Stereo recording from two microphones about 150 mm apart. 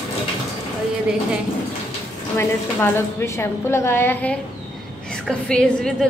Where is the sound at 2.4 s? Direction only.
15° left (ahead or behind).